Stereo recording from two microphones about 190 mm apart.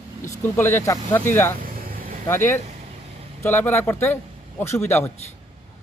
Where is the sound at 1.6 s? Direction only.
50° right (ahead or behind).